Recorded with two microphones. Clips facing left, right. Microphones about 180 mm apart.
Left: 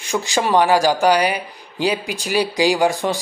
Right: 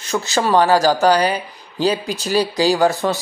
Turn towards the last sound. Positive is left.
turn(degrees=15)  # may be behind; listen again after turning